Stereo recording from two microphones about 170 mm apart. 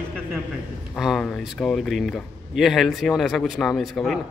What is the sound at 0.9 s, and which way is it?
Speech, centre (ahead or behind).